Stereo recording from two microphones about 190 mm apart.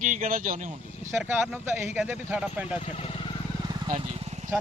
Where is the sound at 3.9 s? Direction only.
35° right (ahead or behind).